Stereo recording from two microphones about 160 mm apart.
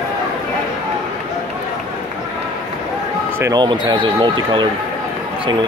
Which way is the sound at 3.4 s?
25° right (ahead or behind).